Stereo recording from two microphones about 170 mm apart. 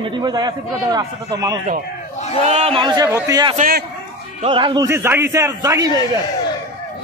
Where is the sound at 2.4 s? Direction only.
40° right (ahead or behind); by 3.5 s 20° right (ahead or behind).